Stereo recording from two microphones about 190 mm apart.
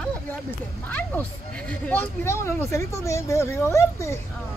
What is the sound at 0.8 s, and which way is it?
Speech, 10° left (ahead or behind).